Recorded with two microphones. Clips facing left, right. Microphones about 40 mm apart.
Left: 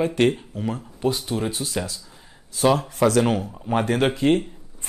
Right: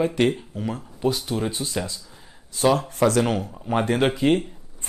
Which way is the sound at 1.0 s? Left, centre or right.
Centre.